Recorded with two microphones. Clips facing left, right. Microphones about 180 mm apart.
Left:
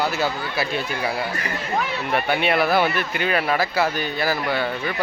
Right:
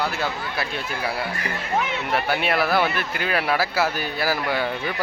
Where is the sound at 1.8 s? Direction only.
20° right (ahead or behind).